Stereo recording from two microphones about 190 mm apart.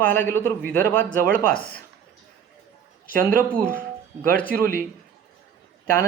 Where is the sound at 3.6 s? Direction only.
50° right (ahead or behind).